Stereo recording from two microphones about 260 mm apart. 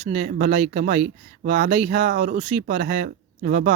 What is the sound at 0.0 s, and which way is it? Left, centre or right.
A man's voice, right.